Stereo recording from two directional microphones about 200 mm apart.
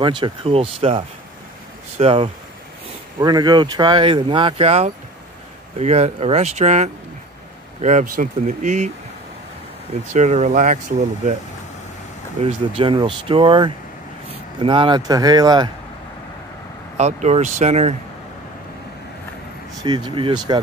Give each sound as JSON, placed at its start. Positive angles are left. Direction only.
{"t": 0.0, "sound": "speech", "side_deg": -25}
{"t": 10.1, "sound": "speech", "side_deg": -35}
{"t": 12.4, "sound": "speech", "side_deg": -30}
{"t": 16.9, "sound": "speech", "side_deg": -35}
{"t": 19.8, "sound": "speech", "side_deg": -25}